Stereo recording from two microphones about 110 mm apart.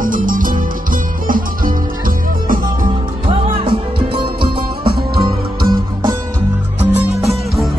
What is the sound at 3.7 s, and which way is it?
Music, 50° right (ahead or behind).